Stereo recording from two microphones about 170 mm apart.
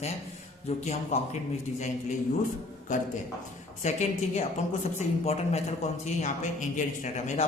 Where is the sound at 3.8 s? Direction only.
40° left (ahead or behind).